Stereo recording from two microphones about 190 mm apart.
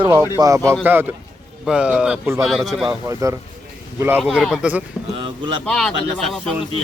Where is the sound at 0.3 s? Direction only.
15° right (ahead or behind); by 2.8 s centre (ahead or behind).